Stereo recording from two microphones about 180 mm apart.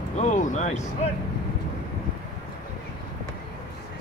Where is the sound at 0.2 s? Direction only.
40° left (ahead or behind).